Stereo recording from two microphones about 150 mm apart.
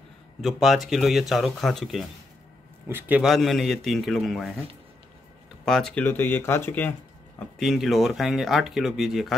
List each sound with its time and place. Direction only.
0.4 s speech: centre (ahead or behind)
2.9 s a man's voice: 10° right (ahead or behind)
3.3 s speech: centre (ahead or behind)
5.7 s speech: 5° left (ahead or behind)
7.3 s speech: centre (ahead or behind)